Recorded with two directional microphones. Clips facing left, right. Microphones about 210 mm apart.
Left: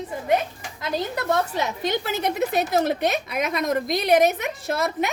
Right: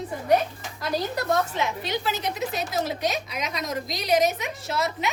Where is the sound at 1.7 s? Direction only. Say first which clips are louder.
Left 3 dB; 50° left (ahead or behind).